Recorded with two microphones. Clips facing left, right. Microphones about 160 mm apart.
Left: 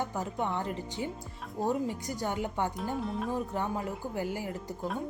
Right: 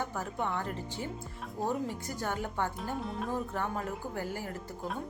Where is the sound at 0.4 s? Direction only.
15° left (ahead or behind).